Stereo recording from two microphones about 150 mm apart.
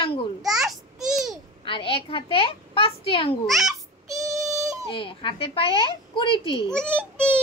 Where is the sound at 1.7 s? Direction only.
35° left (ahead or behind).